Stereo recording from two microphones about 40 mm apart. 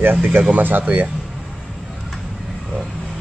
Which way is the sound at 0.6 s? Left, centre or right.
Right.